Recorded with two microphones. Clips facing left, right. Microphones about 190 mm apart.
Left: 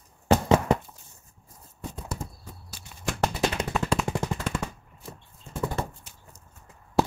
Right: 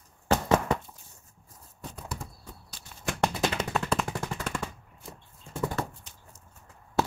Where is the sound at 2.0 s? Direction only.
25° left (ahead or behind).